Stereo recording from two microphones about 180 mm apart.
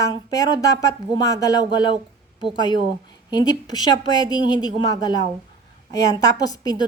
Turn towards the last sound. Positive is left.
turn(degrees=20)  # may be behind; listen again after turning